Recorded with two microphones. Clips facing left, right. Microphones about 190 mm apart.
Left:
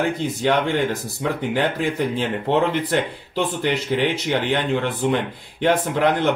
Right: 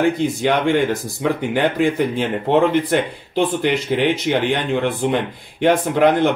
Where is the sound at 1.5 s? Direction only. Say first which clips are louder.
Right 5 dB; 15° right (ahead or behind).